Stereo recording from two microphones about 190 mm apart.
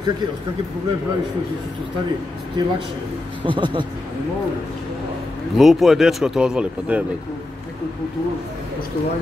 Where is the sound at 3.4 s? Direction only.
25° right (ahead or behind).